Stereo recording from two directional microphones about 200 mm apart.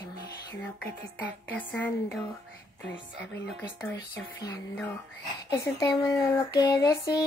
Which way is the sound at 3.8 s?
5° left (ahead or behind).